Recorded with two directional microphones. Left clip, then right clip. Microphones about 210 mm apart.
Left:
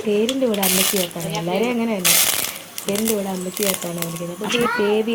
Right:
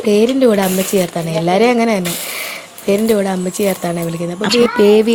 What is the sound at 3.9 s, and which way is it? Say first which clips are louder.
Speech: right 8 dB; 40° right (ahead or behind).